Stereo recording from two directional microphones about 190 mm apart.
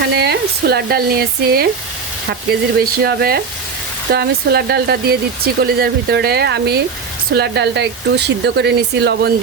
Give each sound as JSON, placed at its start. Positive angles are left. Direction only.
{"t": 0.2, "sound": "speech", "side_deg": -55}